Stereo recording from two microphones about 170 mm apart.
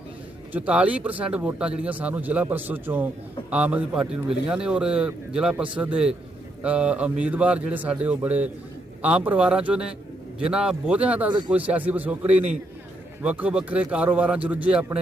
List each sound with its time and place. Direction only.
0.5 s a man's voice: 10° right (ahead or behind)